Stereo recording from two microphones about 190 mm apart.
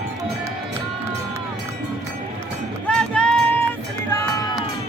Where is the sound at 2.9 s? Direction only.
5° left (ahead or behind).